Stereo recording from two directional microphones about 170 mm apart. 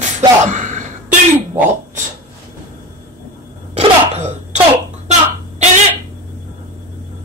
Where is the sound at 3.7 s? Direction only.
40° right (ahead or behind).